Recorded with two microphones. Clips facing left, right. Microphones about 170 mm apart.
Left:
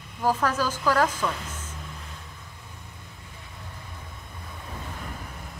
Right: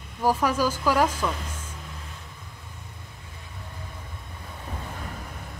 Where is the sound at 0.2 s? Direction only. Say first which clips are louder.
Right 2 dB; 10° right (ahead or behind).